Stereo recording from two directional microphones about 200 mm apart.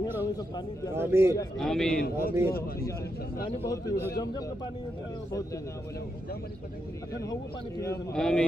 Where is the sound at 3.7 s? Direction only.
15° left (ahead or behind).